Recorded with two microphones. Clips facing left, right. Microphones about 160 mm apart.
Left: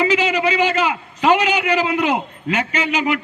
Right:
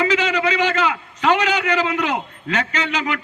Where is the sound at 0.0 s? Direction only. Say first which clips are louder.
Left 2 dB; 15° left (ahead or behind).